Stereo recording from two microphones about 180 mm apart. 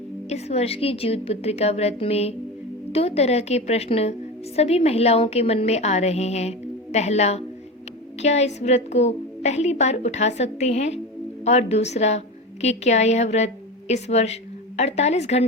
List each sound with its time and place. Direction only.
0.3 s a woman's voice: 35° left (ahead or behind)